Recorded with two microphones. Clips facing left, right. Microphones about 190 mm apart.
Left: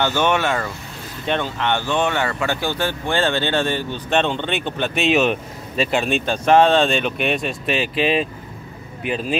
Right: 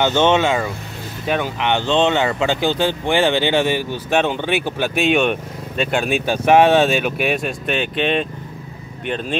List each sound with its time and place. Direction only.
0.0 s speech: 20° right (ahead or behind); by 9.4 s 5° left (ahead or behind)